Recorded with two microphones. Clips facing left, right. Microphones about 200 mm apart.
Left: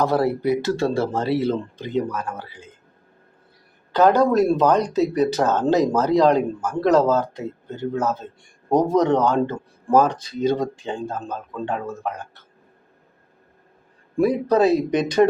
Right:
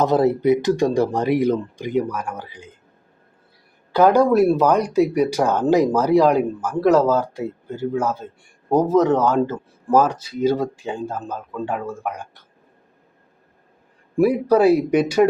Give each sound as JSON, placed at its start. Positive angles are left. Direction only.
{"t": 0.0, "sound": "speech", "side_deg": -20}
{"t": 3.9, "sound": "speech", "side_deg": -10}
{"t": 14.2, "sound": "speech", "side_deg": -10}